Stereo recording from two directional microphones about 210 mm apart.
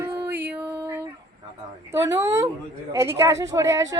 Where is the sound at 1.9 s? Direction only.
15° right (ahead or behind).